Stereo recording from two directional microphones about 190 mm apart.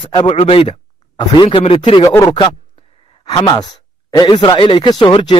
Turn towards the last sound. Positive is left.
turn(degrees=25)  # may be behind; listen again after turning